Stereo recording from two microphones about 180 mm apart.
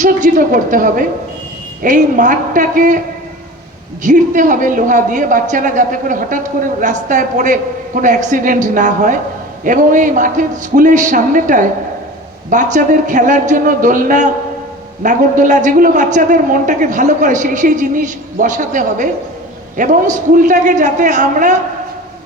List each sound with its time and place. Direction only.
0.0 s a man's voice: 45° right (ahead or behind)
4.0 s a man's voice: 45° right (ahead or behind)